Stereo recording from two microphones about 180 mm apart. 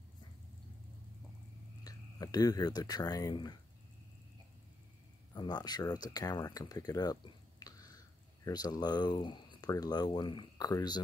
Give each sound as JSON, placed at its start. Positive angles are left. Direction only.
{"t": 1.9, "sound": "speech", "side_deg": 20}
{"t": 5.3, "sound": "speech", "side_deg": 25}